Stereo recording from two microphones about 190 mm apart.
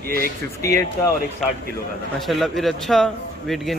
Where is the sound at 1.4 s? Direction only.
5° left (ahead or behind).